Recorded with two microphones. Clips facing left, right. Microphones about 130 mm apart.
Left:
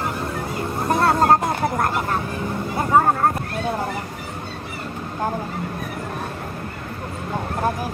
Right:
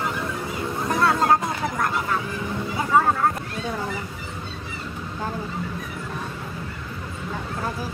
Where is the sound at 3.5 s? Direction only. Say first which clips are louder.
Left 4 dB; 55° left (ahead or behind).